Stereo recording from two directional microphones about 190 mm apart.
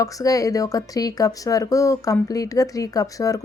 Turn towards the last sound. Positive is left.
turn(degrees=20)  # may be behind; listen again after turning